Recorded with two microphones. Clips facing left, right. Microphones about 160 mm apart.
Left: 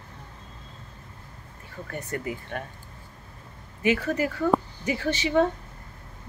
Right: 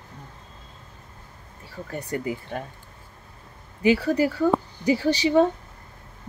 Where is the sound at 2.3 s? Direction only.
25° right (ahead or behind).